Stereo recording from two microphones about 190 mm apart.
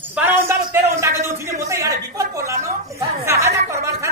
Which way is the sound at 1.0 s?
15° right (ahead or behind).